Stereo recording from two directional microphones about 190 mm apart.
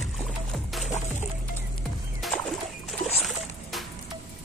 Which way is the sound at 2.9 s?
Centre (ahead or behind).